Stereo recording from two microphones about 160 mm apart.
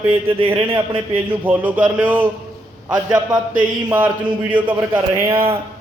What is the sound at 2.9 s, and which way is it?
A man's voice, 25° right (ahead or behind).